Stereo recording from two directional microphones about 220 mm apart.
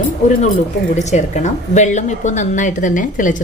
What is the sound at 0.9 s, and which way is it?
A woman's voice, 30° left (ahead or behind).